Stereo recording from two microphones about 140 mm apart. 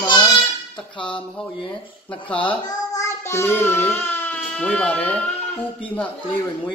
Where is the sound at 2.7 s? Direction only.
20° left (ahead or behind).